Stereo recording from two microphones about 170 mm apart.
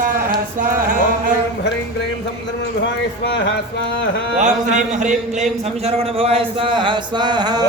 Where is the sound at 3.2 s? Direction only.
90° left.